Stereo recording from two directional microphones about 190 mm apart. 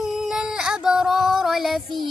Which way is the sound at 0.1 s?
5° right (ahead or behind).